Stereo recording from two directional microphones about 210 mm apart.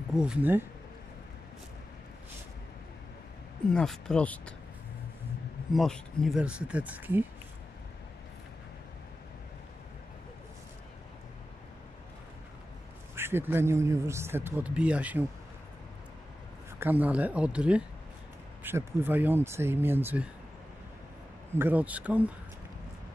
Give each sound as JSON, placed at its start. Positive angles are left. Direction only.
{"t": 0.1, "sound": "speech", "side_deg": -5}
{"t": 3.7, "sound": "speech", "side_deg": 5}
{"t": 5.7, "sound": "speech", "side_deg": 0}
{"t": 13.1, "sound": "speech", "side_deg": -10}
{"t": 16.8, "sound": "speech", "side_deg": -10}
{"t": 21.5, "sound": "speech", "side_deg": -10}